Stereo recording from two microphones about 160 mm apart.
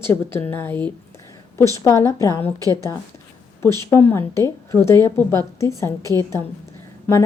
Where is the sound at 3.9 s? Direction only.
15° left (ahead or behind).